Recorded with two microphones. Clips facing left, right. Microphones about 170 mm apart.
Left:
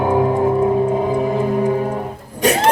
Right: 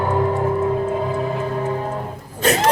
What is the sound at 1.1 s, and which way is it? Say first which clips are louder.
Music: left 5 dB; 15° left (ahead or behind).